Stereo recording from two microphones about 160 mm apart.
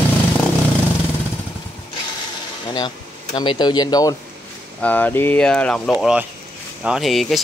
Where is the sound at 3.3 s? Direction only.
30° left (ahead or behind).